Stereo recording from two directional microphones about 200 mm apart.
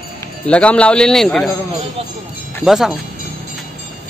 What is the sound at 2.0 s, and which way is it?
Speech, 30° right (ahead or behind).